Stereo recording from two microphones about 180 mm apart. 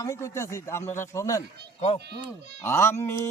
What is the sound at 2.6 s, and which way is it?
Speech, 15° left (ahead or behind).